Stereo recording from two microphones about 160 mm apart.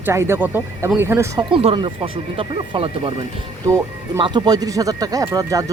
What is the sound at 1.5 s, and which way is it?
Speech, 35° right (ahead or behind).